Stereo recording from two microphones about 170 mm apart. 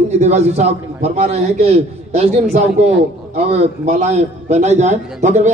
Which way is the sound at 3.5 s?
40° right (ahead or behind).